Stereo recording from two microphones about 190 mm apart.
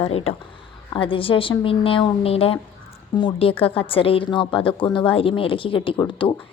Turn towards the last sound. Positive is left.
turn(degrees=25)  # may be behind; listen again after turning